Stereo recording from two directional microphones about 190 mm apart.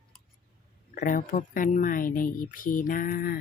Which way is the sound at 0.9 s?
45° left (ahead or behind).